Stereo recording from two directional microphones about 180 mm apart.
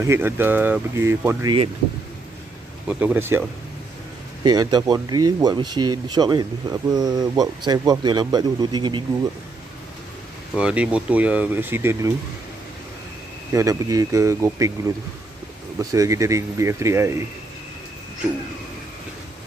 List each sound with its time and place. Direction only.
0.0 s speech: 15° right (ahead or behind)
2.9 s speech: 5° right (ahead or behind); by 9.0 s 25° right (ahead or behind)
10.5 s speech: 5° right (ahead or behind)
13.5 s speech: 15° right (ahead or behind)
15.8 s speech: 20° right (ahead or behind)